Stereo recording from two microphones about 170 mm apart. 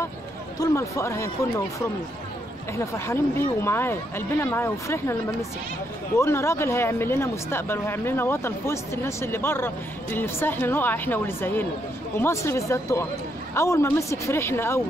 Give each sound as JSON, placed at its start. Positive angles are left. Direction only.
{"t": 0.6, "sound": "speech", "side_deg": 15}
{"t": 2.8, "sound": "speech", "side_deg": 15}